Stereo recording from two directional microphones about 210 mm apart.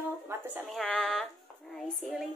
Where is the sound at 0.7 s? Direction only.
5° left (ahead or behind).